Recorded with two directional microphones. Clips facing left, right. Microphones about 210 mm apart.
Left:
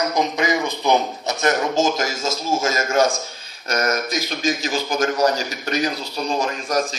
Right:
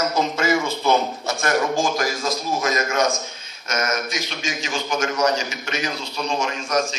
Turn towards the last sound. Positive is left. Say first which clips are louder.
# left 1 dB
turn(degrees=35)  # may be behind; listen again after turning